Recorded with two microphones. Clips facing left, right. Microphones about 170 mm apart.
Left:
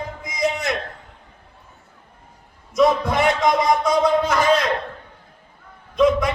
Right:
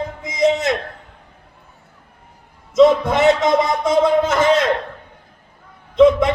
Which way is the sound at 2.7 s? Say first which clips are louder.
Right 5 dB; 25° right (ahead or behind).